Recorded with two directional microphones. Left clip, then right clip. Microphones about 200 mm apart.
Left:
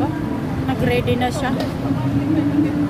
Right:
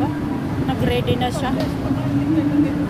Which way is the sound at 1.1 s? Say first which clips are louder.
Left 1 dB; 15° left (ahead or behind).